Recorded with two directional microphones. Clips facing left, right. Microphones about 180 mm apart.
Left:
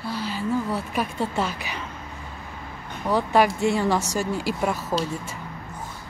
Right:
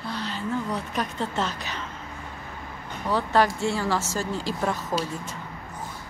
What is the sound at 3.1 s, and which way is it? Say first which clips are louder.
Speech: left 2 dB; 15° left (ahead or behind).